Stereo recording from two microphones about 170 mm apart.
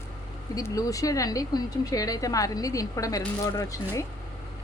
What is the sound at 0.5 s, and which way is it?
A woman's voice, 20° left (ahead or behind).